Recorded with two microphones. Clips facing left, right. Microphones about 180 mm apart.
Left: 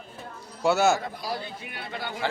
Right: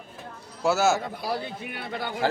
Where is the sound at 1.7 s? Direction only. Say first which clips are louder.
Right 3 dB; 50° right (ahead or behind).